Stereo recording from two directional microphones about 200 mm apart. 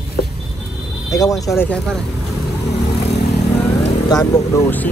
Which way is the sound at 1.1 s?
15° left (ahead or behind).